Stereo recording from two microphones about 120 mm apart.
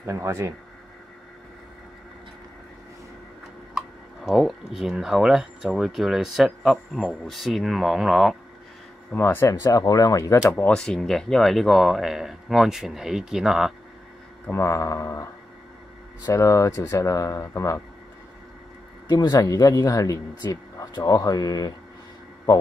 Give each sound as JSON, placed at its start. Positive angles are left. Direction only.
{"t": 0.0, "sound": "speech", "side_deg": -25}
{"t": 3.7, "sound": "speech", "side_deg": 0}
{"t": 9.1, "sound": "speech", "side_deg": 15}
{"t": 10.5, "sound": "speech", "side_deg": 10}
{"t": 14.5, "sound": "speech", "side_deg": 25}
{"t": 16.3, "sound": "speech", "side_deg": 25}
{"t": 19.0, "sound": "speech", "side_deg": 35}